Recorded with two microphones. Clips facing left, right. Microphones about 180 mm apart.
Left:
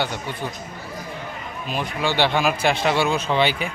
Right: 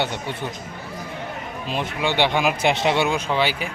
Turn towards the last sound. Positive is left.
turn(degrees=-5)  # may be behind; listen again after turning